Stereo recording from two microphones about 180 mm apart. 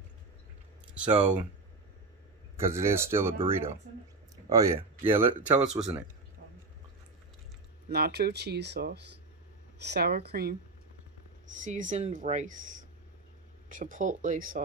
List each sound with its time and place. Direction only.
0.9 s speech: 5° right (ahead or behind)
2.5 s speech: 15° right (ahead or behind)
4.5 s speech: 20° right (ahead or behind)
7.9 s speech: 60° right (ahead or behind)
11.6 s speech: 45° right (ahead or behind)